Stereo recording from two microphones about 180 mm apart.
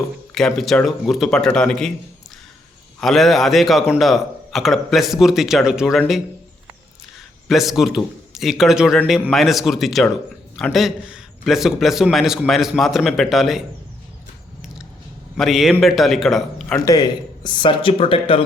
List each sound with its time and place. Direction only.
0.3 s a man's voice: centre (ahead or behind)
3.0 s a man's voice: centre (ahead or behind)
7.4 s a man's voice: centre (ahead or behind)
15.4 s a man's voice: centre (ahead or behind)
16.8 s speech: 20° left (ahead or behind)